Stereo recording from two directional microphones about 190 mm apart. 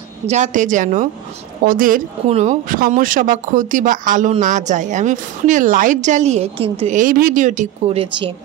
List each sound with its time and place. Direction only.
0.3 s a woman's voice: 40° right (ahead or behind)
7.0 s a woman's voice: 45° right (ahead or behind); by 8.3 s 30° right (ahead or behind)